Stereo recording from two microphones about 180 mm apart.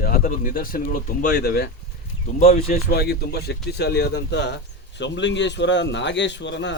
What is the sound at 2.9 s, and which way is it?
A man's voice, 60° left (ahead or behind).